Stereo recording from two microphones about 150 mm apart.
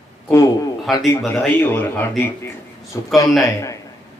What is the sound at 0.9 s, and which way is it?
Speech, centre (ahead or behind).